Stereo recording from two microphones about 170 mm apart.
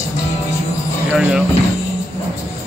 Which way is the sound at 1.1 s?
10° right (ahead or behind).